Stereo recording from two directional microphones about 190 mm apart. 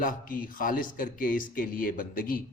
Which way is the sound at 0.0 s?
45° left (ahead or behind).